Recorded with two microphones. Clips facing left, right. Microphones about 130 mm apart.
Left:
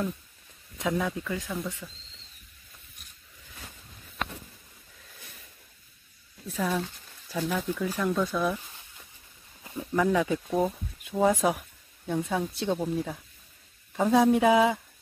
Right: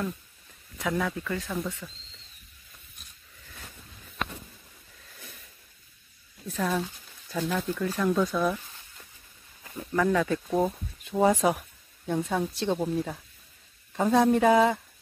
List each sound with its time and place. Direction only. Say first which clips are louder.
0.7 s speech: even; 20° left (ahead or behind)
1.8 s speech: right 1 dB; 5° right (ahead or behind)
6.4 s speech: right 1 dB; centre (ahead or behind)